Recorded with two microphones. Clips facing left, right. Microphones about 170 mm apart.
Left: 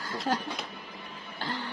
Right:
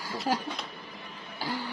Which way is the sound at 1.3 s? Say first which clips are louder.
Right 2 dB; 10° right (ahead or behind).